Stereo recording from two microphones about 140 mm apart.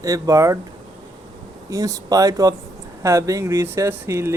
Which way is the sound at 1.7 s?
25° right (ahead or behind).